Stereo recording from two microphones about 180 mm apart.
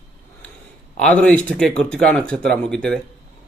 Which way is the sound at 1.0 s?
5° left (ahead or behind).